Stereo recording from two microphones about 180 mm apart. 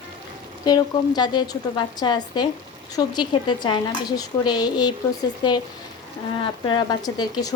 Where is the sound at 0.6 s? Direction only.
25° left (ahead or behind).